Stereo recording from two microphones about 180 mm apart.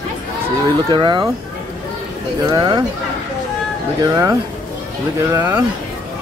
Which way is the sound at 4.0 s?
20° right (ahead or behind).